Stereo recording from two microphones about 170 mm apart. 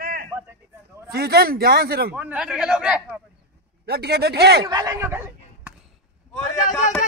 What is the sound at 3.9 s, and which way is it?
Speech, 70° right (ahead or behind).